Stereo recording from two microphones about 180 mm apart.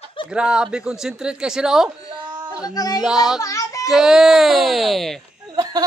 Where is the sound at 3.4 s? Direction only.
20° left (ahead or behind).